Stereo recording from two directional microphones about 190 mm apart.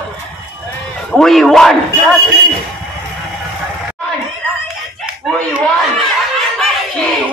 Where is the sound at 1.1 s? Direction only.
Centre (ahead or behind).